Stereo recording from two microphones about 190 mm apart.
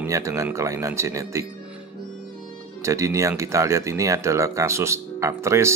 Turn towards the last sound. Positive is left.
turn(degrees=-15)  # may be behind; listen again after turning